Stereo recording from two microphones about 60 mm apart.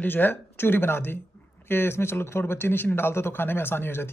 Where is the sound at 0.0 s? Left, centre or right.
Left.